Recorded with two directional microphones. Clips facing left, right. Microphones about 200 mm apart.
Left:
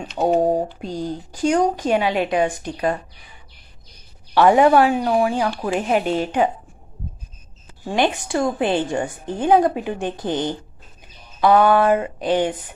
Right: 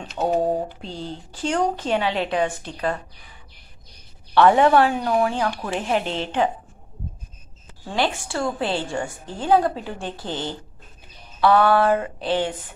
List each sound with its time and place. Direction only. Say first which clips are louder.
0.0 s a sound: left 4 dB; 10° left (ahead or behind)
0.7 s a woman's voice: left 6 dB; 15° left (ahead or behind)
4.3 s a woman's voice: left 2 dB; 10° left (ahead or behind)
7.9 s a woman's voice: left 4 dB; 20° left (ahead or behind)